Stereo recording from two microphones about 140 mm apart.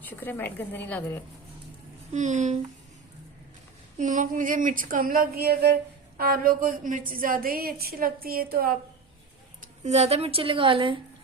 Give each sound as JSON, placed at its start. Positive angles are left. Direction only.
{"t": 0.0, "sound": "a woman's voice", "side_deg": 15}
{"t": 2.1, "sound": "speech", "side_deg": -60}
{"t": 3.9, "sound": "a woman's voice", "side_deg": -65}
{"t": 9.8, "sound": "a woman's voice", "side_deg": -50}